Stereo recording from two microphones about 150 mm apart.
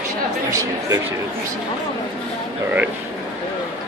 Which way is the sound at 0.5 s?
20° right (ahead or behind).